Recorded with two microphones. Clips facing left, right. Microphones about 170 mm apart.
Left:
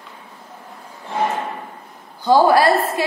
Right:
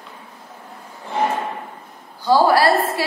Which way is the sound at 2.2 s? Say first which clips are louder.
Left 1 dB; 20° left (ahead or behind).